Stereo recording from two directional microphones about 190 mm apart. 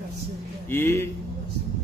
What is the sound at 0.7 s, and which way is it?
Speech, 15° left (ahead or behind).